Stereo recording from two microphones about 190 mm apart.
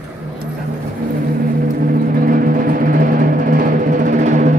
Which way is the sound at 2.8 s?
45° right (ahead or behind).